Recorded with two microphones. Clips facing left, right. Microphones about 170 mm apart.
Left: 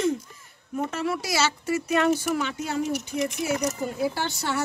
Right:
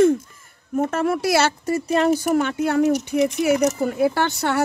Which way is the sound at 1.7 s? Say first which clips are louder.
Right 3 dB; 40° right (ahead or behind).